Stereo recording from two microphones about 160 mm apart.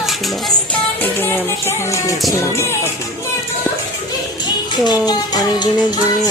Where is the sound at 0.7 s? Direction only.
10° left (ahead or behind).